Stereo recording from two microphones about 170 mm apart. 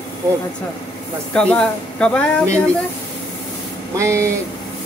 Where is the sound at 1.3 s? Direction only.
5° left (ahead or behind).